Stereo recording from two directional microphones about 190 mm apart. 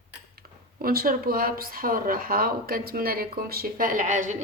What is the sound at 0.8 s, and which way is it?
Speech, 50° right (ahead or behind).